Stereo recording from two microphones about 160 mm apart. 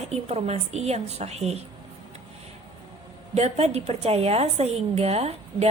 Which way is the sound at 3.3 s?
45° right (ahead or behind).